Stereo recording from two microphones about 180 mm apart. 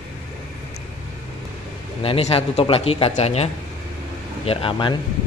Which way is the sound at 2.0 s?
35° left (ahead or behind).